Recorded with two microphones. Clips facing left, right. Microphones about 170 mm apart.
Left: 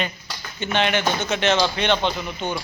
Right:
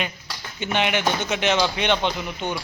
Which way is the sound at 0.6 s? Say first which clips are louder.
Left 1 dB; 10° right (ahead or behind).